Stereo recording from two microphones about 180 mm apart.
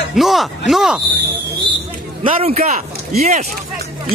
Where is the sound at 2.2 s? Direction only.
35° right (ahead or behind).